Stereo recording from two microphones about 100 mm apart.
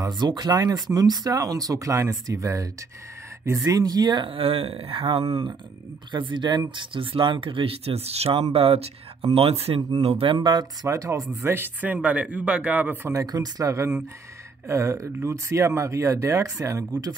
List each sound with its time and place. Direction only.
0.0 s speech: 45° right (ahead or behind)
4.3 s speech: 65° right (ahead or behind)
6.1 s speech: 50° right (ahead or behind); by 9.8 s 85° right
9.8 s speech: 40° right (ahead or behind)
10.0 s speech: 75° right (ahead or behind); by 11.2 s 35° right (ahead or behind)
11.4 s speech: 20° right (ahead or behind)
13.1 s speech: 40° right (ahead or behind)